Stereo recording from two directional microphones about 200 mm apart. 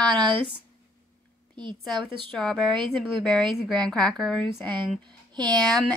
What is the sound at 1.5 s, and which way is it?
Speech, 25° right (ahead or behind).